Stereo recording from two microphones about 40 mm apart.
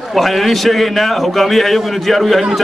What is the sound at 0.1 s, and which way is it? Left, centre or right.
A man's voice, centre.